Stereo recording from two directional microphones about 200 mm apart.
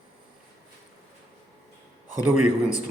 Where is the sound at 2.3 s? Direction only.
35° left (ahead or behind).